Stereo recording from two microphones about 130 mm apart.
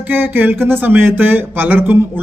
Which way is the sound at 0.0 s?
15° right (ahead or behind).